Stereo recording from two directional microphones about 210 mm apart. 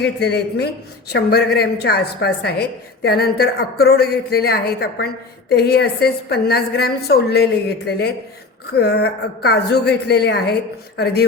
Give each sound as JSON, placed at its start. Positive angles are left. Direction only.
{"t": 0.0, "sound": "a woman's voice", "side_deg": 50}